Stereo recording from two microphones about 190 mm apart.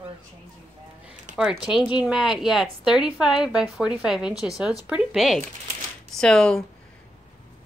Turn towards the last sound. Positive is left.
turn(degrees=5)  # may be behind; listen again after turning